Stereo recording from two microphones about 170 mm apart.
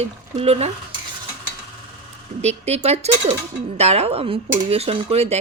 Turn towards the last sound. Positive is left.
turn(degrees=-35)  # may be behind; listen again after turning